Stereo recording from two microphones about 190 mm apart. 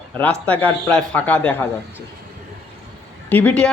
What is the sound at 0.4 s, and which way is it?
A man's voice, 10° left (ahead or behind).